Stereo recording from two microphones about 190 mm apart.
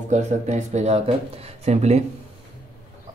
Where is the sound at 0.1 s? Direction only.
35° right (ahead or behind).